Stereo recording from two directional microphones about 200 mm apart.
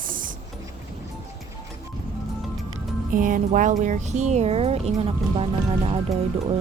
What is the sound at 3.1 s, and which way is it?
Speech, 40° right (ahead or behind).